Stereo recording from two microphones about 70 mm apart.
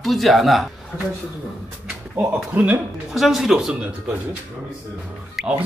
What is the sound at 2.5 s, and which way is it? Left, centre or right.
Speech, right.